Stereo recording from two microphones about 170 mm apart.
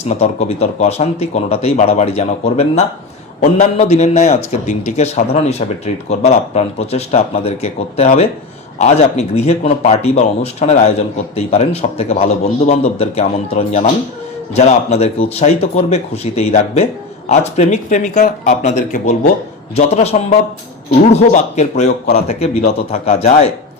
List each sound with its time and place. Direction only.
0.1 s speech: 40° left (ahead or behind)
19.7 s speech: 40° left (ahead or behind)